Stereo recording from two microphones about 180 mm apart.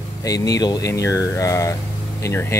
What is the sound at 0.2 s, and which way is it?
Speech, 20° left (ahead or behind).